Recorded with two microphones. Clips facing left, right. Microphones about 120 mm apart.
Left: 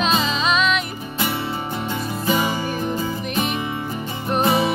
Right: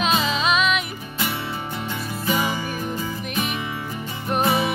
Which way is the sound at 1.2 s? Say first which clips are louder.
Left 3 dB; 30° left (ahead or behind).